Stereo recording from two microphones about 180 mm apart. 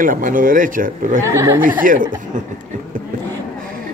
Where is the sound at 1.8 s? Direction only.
50° right (ahead or behind).